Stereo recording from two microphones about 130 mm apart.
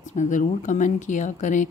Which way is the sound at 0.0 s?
70° left (ahead or behind).